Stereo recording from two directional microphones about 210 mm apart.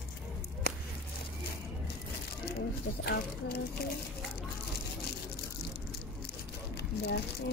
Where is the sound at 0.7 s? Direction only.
45° left (ahead or behind).